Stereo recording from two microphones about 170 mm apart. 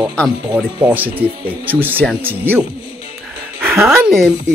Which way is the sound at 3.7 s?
Centre (ahead or behind).